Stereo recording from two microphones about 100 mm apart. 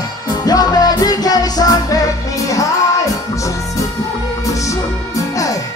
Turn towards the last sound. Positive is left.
turn(degrees=35)  # may be behind; listen again after turning